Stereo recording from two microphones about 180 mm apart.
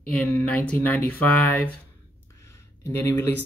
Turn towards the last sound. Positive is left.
turn(degrees=15)  # may be behind; listen again after turning